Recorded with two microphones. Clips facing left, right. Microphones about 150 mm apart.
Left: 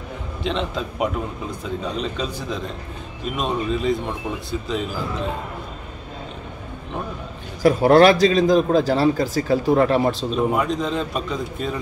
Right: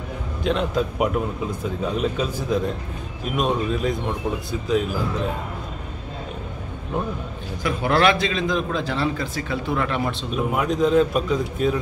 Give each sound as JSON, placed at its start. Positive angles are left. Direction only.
{"t": 0.4, "sound": "a man's voice", "side_deg": 0}
{"t": 7.6, "sound": "a man's voice", "side_deg": 40}
{"t": 10.3, "sound": "a man's voice", "side_deg": 0}